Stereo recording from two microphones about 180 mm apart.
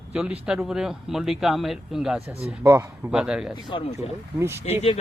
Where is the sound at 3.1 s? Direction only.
5° right (ahead or behind).